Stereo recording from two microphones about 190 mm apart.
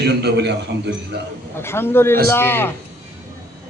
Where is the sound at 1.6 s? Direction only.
10° left (ahead or behind).